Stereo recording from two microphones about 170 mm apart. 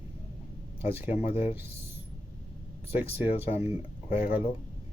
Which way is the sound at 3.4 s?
35° left (ahead or behind).